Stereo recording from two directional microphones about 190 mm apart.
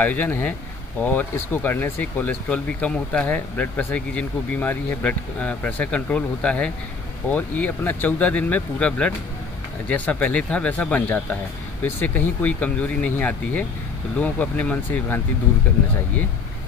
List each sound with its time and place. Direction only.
0.0 s speech: 10° left (ahead or behind)